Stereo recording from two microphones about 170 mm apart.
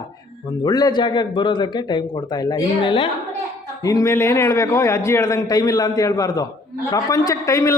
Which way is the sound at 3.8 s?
20° left (ahead or behind).